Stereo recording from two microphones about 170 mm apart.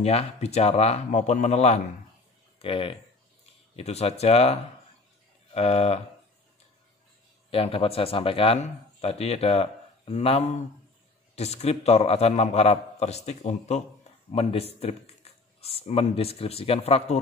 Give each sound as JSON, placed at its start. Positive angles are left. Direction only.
{"t": 0.0, "sound": "speech", "side_deg": 35}
{"t": 2.6, "sound": "speech", "side_deg": 30}
{"t": 7.5, "sound": "speech", "side_deg": 35}